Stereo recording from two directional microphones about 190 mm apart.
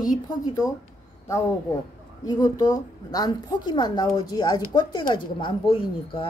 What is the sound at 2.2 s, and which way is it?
Speech, 20° left (ahead or behind).